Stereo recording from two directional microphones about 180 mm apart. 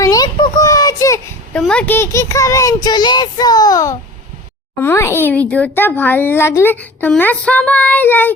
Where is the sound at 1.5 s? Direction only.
5° left (ahead or behind).